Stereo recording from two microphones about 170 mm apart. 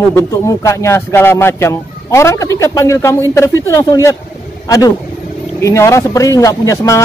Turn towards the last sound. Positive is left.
turn(degrees=20)  # may be behind; listen again after turning